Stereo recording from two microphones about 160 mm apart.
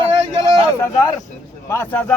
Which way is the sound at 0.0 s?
20° left (ahead or behind).